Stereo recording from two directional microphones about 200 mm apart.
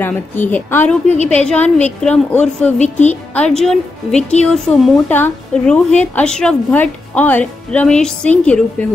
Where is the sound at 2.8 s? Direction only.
35° left (ahead or behind).